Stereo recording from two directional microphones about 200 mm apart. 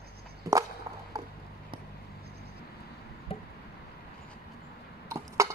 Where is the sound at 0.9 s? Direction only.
15° right (ahead or behind).